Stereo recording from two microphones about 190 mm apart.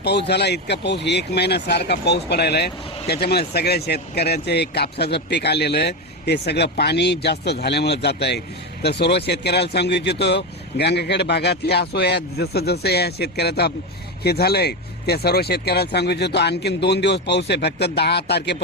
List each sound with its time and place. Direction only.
0.0 s speech: 60° left (ahead or behind)